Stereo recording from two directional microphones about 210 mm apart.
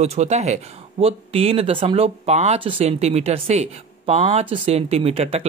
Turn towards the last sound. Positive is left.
turn(degrees=-30)  # may be behind; listen again after turning